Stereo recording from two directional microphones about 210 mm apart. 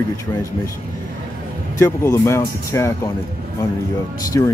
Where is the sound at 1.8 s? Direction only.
10° left (ahead or behind).